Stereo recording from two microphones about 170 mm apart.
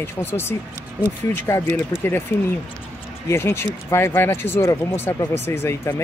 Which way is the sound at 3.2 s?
15° left (ahead or behind).